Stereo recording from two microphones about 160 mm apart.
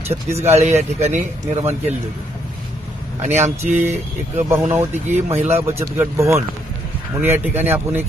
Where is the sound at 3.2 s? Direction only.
45° right (ahead or behind).